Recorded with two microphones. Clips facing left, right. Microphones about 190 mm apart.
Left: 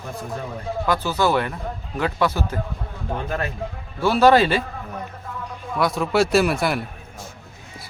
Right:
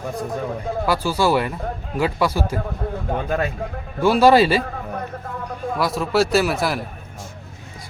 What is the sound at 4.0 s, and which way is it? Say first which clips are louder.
Speech: right 2 dB; 10° right (ahead or behind).